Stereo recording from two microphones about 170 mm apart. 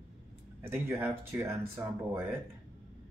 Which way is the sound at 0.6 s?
15° right (ahead or behind).